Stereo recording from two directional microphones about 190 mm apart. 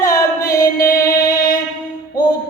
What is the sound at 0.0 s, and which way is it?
Music, 20° left (ahead or behind).